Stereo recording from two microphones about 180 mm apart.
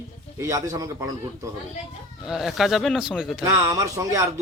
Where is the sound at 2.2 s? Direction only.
Centre (ahead or behind).